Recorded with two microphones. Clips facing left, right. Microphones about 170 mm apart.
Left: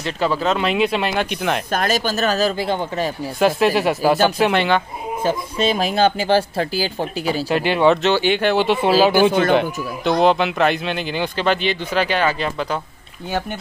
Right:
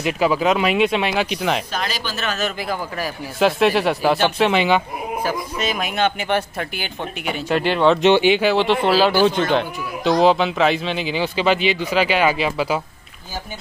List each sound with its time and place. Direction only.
0.0 s speech: 10° right (ahead or behind)
1.7 s speech: 50° left (ahead or behind); by 3.1 s 25° left (ahead or behind)
3.3 s speech: centre (ahead or behind)
5.6 s speech: 30° left (ahead or behind)
7.4 s speech: 5° left (ahead or behind)
8.0 s speech: 15° right (ahead or behind)
8.3 s speech: 5° right (ahead or behind)
9.1 s speech: 50° left (ahead or behind)
9.6 s speech: centre (ahead or behind)